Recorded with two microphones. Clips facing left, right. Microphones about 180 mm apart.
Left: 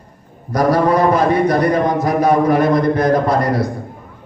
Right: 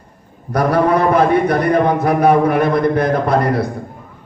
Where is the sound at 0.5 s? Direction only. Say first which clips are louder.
Even; 60° right (ahead or behind).